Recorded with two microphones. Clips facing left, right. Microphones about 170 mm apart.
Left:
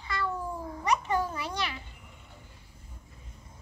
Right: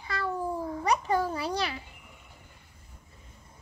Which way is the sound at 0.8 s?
35° right (ahead or behind).